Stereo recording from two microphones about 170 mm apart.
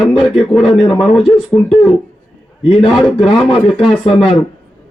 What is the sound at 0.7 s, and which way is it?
Speech, 30° left (ahead or behind).